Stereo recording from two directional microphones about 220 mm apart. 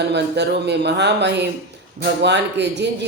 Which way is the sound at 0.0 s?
50° right (ahead or behind).